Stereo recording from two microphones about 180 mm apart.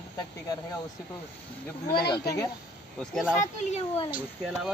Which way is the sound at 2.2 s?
20° left (ahead or behind).